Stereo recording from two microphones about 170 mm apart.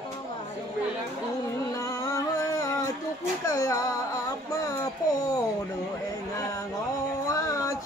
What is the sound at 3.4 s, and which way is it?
Speech, 20° left (ahead or behind).